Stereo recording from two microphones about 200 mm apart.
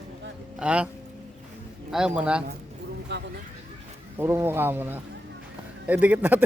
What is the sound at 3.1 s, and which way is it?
Speech, 60° right (ahead or behind).